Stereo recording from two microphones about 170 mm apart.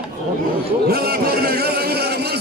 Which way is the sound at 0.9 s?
65° right (ahead or behind).